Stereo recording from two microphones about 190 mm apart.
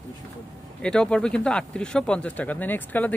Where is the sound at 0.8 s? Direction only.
5° left (ahead or behind).